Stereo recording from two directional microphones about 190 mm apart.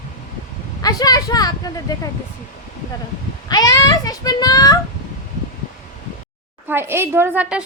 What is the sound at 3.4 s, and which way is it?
A child's voice, 20° left (ahead or behind).